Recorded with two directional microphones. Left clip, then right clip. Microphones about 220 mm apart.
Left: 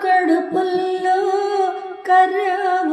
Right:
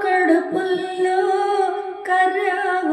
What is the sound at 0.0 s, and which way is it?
Music, 50° left (ahead or behind).